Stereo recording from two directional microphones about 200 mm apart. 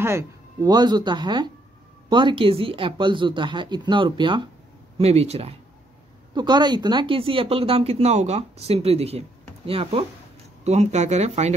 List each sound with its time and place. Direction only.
0.0 s speech: 15° right (ahead or behind); by 11.5 s 35° right (ahead or behind)